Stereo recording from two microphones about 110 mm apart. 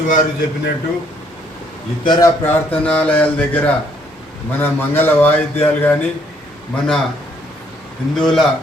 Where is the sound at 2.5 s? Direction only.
10° left (ahead or behind).